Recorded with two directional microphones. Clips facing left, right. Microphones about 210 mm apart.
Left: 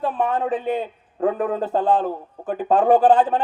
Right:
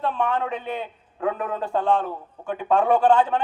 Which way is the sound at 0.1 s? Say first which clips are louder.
Left 3 dB; 35° left (ahead or behind).